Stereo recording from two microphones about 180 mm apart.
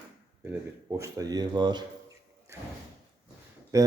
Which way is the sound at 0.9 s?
15° right (ahead or behind).